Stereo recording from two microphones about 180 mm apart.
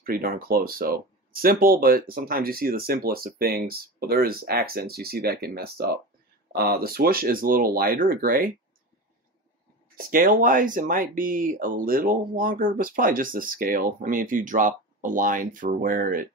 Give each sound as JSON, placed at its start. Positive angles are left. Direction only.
{"t": 0.0, "sound": "speech", "side_deg": -55}
{"t": 9.9, "sound": "speech", "side_deg": -50}